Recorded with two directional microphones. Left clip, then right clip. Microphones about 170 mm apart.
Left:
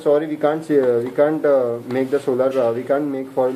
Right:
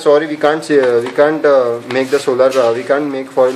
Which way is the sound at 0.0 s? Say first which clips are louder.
Right 6 dB; 10° right (ahead or behind).